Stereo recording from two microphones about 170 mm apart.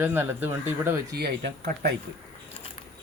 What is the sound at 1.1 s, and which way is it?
Speech, 70° right (ahead or behind).